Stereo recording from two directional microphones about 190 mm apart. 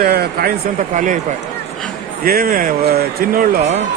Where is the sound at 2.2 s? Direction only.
50° right (ahead or behind).